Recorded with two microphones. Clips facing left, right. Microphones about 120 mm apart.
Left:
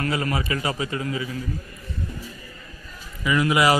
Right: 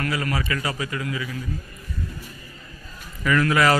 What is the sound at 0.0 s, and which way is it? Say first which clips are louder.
A man's voice: left 1 dB; 25° left (ahead or behind).